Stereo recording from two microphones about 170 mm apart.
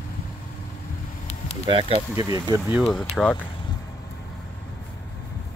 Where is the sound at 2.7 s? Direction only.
Centre (ahead or behind).